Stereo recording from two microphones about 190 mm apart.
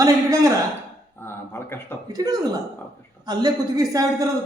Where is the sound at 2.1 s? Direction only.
20° right (ahead or behind).